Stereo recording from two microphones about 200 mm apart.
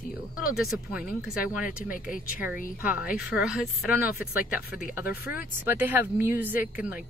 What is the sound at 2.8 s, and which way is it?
Speech, 5° right (ahead or behind).